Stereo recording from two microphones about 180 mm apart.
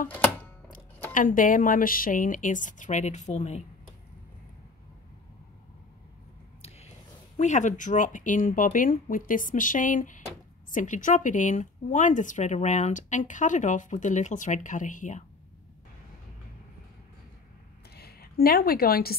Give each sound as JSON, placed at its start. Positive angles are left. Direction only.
{"t": 1.1, "sound": "a woman's voice", "side_deg": 50}
{"t": 7.3, "sound": "a woman's voice", "side_deg": 40}
{"t": 17.9, "sound": "a woman's voice", "side_deg": 60}